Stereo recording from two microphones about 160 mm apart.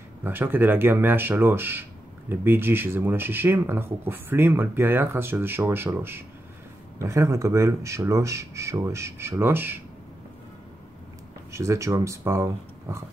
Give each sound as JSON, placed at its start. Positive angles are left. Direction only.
{"t": 0.2, "sound": "speech", "side_deg": -15}
{"t": 11.5, "sound": "speech", "side_deg": -20}